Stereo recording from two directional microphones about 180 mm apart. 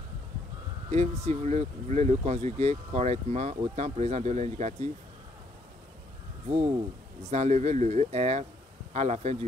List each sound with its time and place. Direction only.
0.8 s speech: 35° right (ahead or behind)
7.2 s speech: 40° right (ahead or behind)